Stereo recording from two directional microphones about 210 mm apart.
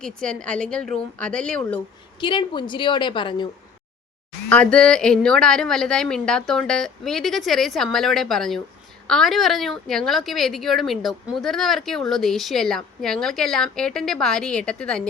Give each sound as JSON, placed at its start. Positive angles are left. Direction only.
{"t": 0.0, "sound": "a woman's voice", "side_deg": 5}
{"t": 2.2, "sound": "a woman's voice", "side_deg": 20}
{"t": 4.4, "sound": "a woman's voice", "side_deg": 5}